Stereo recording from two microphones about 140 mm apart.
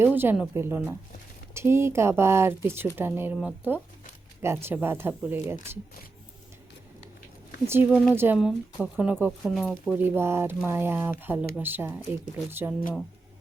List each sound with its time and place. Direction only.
0.0 s speech: 15° right (ahead or behind)
7.7 s speech: 15° right (ahead or behind)
9.4 s speech: centre (ahead or behind)
10.0 s speech: 20° right (ahead or behind)